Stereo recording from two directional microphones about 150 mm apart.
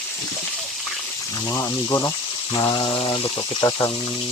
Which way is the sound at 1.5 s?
20° left (ahead or behind).